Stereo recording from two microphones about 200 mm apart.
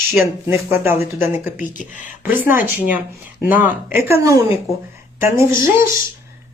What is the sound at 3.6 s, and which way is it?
Speech, 15° right (ahead or behind).